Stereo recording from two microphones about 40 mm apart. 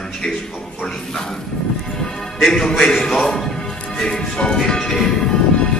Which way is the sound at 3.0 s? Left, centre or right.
Centre.